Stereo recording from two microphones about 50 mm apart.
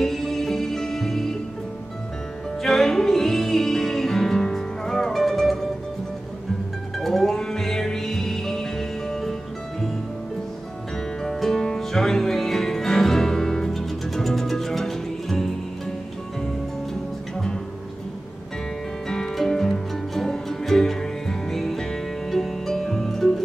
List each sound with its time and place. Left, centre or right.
0.0 s music: centre
2.6 s music: centre
7.0 s music: centre
11.2 s music: centre
19.0 s music: centre